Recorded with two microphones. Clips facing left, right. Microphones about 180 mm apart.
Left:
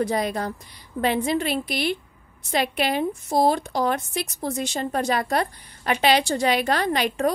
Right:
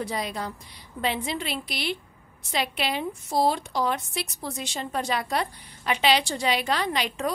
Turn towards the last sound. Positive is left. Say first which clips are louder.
# left 5 dB
turn(degrees=50)  # may be behind; listen again after turning